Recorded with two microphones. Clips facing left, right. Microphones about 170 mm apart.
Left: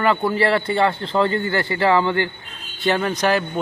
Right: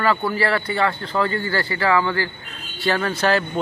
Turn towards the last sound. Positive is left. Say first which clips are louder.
# left 1 dB
turn(degrees=15)  # may be behind; listen again after turning